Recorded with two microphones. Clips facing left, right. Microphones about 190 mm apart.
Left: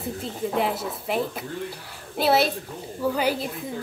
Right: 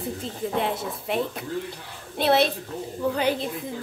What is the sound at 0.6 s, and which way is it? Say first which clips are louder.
A woman's voice: left 1 dB; centre (ahead or behind).